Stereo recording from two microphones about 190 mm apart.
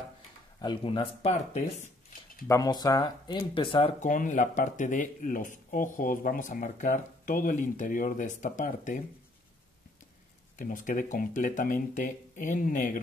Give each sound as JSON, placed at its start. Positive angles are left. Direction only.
{"t": 0.6, "sound": "speech", "side_deg": 25}
{"t": 2.4, "sound": "speech", "side_deg": 15}
{"t": 4.1, "sound": "speech", "side_deg": 40}
{"t": 10.6, "sound": "speech", "side_deg": 45}